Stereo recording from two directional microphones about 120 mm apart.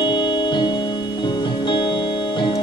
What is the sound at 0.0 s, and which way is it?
Music, 40° left (ahead or behind).